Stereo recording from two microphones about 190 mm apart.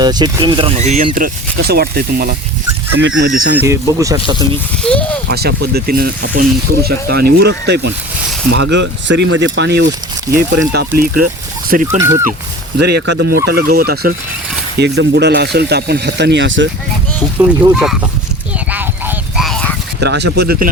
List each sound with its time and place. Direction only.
0.0 s speech: 20° right (ahead or behind); by 2.3 s 55° right (ahead or behind)
3.3 s speech: 50° right (ahead or behind)
3.6 s speech: 15° right (ahead or behind)
4.8 s speech: 5° left (ahead or behind)
5.3 s speech: 55° right (ahead or behind)
11.9 s speech: 15° right (ahead or behind)
12.8 s speech: 65° right (ahead or behind)
17.3 s speech: 10° right (ahead or behind)
18.7 s a sound: 10° right (ahead or behind)
20.0 s speech: 60° right (ahead or behind)